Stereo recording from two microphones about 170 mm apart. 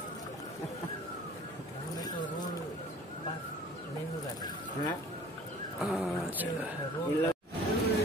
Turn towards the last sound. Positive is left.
turn(degrees=0)  # may be behind; listen again after turning